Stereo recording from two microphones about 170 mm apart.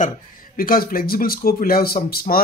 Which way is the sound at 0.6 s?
60° left (ahead or behind).